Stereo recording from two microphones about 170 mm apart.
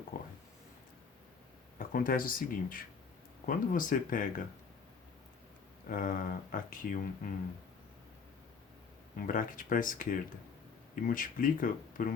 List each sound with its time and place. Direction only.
0.1 s speech: 55° left (ahead or behind)
1.8 s speech: 55° left (ahead or behind)
5.9 s speech: 50° left (ahead or behind)
9.2 s speech: 55° left (ahead or behind)